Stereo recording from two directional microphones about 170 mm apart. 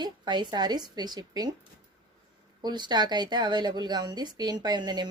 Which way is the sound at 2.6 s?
25° right (ahead or behind).